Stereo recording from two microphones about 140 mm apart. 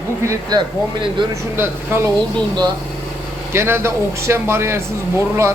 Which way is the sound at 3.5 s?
15° right (ahead or behind).